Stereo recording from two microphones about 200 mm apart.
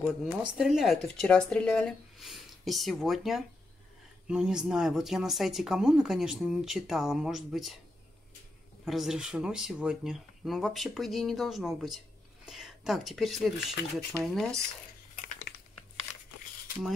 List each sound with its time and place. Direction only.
0.0 s speech: 5° right (ahead or behind)
8.8 s speech: centre (ahead or behind)
16.1 s a sound: 35° left (ahead or behind)